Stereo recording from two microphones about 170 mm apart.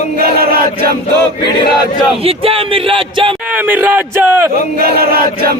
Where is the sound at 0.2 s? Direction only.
65° right (ahead or behind).